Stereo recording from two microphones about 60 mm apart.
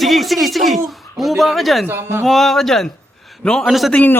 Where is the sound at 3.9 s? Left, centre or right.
Left.